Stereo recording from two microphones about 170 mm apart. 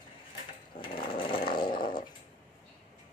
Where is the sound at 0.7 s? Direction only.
30° left (ahead or behind).